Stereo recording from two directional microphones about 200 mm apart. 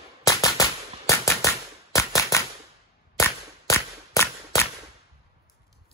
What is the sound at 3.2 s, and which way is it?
Whip, 15° left (ahead or behind).